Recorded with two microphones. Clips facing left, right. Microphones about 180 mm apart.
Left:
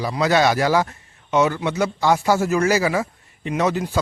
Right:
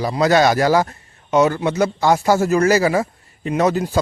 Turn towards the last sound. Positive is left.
turn(degrees=-40)  # may be behind; listen again after turning